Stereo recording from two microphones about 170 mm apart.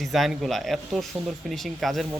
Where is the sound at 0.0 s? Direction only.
Centre (ahead or behind).